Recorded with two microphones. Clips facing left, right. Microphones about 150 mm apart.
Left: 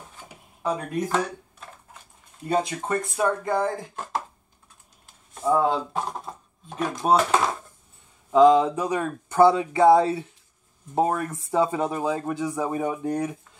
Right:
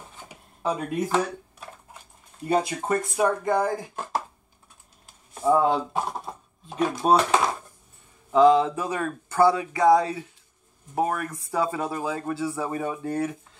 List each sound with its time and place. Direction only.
0.2 s a sound: 5° right (ahead or behind)
2.4 s speech: 5° right (ahead or behind)
5.4 s speech: 5° right (ahead or behind)
8.3 s speech: 15° left (ahead or behind)